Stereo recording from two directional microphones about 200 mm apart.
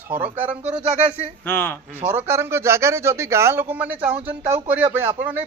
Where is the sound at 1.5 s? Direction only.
10° left (ahead or behind).